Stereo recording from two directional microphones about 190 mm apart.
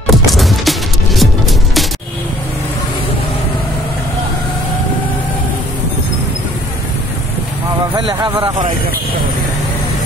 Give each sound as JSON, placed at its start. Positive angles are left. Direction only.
{"t": 0.0, "sound": "music", "side_deg": 0}
{"t": 8.0, "sound": "a man's voice", "side_deg": -25}